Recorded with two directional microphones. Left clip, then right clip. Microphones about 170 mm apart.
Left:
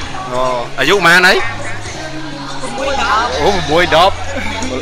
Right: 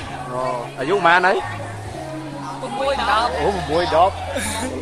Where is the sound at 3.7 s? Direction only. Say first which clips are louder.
Left 8 dB; 20° left (ahead or behind).